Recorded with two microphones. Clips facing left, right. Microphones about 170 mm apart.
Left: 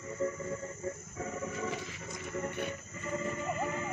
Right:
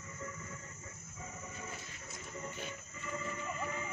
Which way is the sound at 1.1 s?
75° left (ahead or behind).